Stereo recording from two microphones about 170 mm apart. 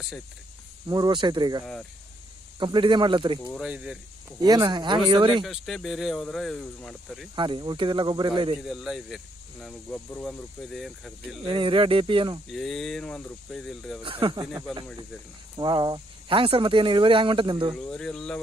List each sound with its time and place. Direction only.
0.8 s speech: 25° right (ahead or behind)
2.6 s speech: 30° right (ahead or behind)
3.5 s speech: 5° right (ahead or behind)
4.4 s speech: 25° right (ahead or behind)
5.4 s speech: centre (ahead or behind)
7.3 s speech: 30° right (ahead or behind)
8.6 s speech: centre (ahead or behind)
11.4 s speech: 30° right (ahead or behind)
12.4 s speech: centre (ahead or behind)
14.0 s speech: 30° right (ahead or behind)
17.7 s speech: 5° left (ahead or behind)